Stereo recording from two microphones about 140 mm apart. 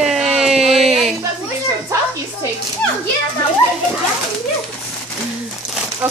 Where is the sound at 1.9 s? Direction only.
25° right (ahead or behind).